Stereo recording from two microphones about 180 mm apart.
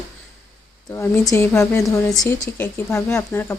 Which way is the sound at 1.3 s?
15° left (ahead or behind).